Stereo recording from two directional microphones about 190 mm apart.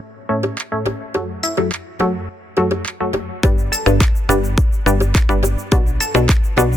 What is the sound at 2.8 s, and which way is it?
Music, 5° left (ahead or behind).